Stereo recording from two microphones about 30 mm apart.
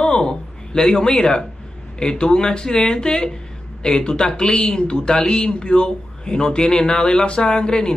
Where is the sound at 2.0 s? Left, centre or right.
Left.